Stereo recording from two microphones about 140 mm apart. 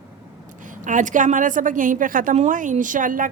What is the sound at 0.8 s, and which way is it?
A woman's voice, 65° right (ahead or behind).